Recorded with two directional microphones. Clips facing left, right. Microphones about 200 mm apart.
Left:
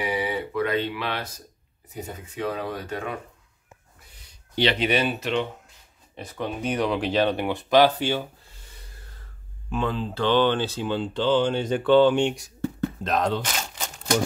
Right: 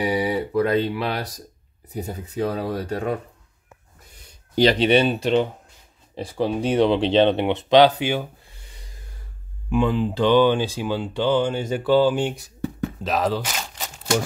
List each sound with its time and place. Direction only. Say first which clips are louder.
0.0 s speech: right 5 dB; 35° right (ahead or behind)
4.6 s speech: right 6 dB; 35° right (ahead or behind); by 8.2 s 15° right (ahead or behind)
8.6 s a sound: right 2 dB; 15° right (ahead or behind)
9.7 s speech: right 6 dB; 15° right (ahead or behind)